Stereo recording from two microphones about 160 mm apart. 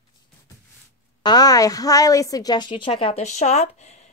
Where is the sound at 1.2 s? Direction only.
25° left (ahead or behind).